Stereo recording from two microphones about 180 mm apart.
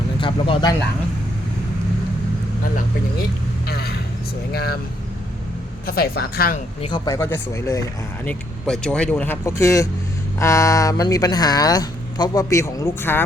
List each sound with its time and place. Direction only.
0.2 s speech: 30° left (ahead or behind)
3.7 s vehicle: 60° left (ahead or behind)
4.5 s speech: 60° left (ahead or behind)
5.8 s speech: 55° left (ahead or behind)
6.8 s speech: 25° left (ahead or behind)